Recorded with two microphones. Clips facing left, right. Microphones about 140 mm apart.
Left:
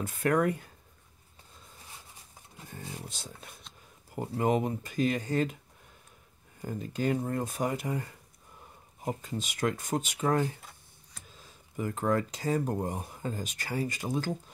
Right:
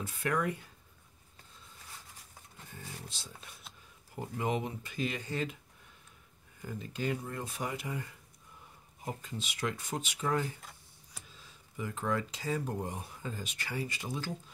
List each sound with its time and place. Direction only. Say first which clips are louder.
0.0 s speech: left 6 dB; 50° left (ahead or behind)
3.1 s speech: left 4 dB; 50° left (ahead or behind)
6.6 s speech: left 5 dB; 40° left (ahead or behind)
10.6 s computer keyboard: even; centre (ahead or behind)
11.2 s speech: left 3 dB; 45° left (ahead or behind)